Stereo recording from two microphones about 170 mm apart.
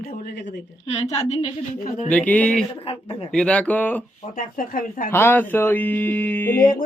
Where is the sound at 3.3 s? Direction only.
5° left (ahead or behind).